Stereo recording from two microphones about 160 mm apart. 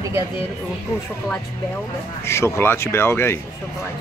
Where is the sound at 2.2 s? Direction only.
15° left (ahead or behind).